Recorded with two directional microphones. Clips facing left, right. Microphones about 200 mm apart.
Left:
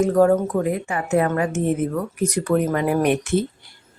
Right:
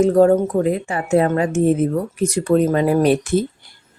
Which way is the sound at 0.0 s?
30° right (ahead or behind).